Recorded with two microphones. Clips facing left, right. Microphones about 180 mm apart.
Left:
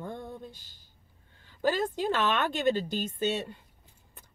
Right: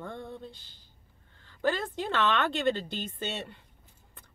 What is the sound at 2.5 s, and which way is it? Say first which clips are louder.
Speech: left 2 dB; 45° left (ahead or behind).